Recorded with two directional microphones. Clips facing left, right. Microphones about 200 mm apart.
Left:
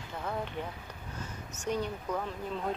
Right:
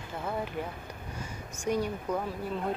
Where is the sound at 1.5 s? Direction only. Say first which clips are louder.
Right 3 dB; 10° right (ahead or behind).